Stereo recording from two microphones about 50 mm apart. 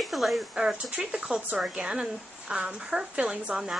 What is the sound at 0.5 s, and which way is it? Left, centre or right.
A woman's voice, centre.